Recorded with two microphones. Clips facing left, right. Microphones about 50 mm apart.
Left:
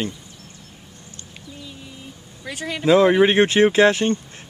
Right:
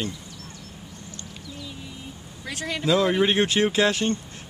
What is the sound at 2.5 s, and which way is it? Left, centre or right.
Speech, centre.